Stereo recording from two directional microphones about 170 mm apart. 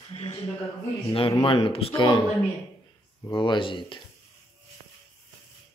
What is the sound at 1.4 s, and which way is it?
Speech, 30° left (ahead or behind).